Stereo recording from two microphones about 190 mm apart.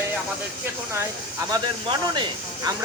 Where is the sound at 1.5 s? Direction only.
25° right (ahead or behind).